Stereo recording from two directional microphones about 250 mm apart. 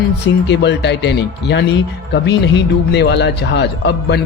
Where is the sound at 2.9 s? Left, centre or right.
Left.